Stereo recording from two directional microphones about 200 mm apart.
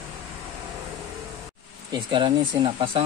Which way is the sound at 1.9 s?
25° right (ahead or behind).